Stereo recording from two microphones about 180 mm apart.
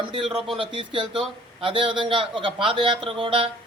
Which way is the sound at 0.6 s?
30° right (ahead or behind).